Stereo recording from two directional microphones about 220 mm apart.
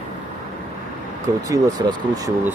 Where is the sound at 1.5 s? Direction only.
15° right (ahead or behind).